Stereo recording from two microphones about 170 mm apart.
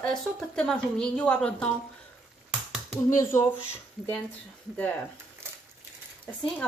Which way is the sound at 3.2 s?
15° left (ahead or behind).